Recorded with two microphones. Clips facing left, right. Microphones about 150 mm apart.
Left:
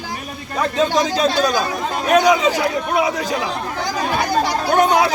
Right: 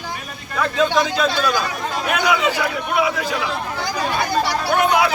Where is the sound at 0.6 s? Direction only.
35° left (ahead or behind).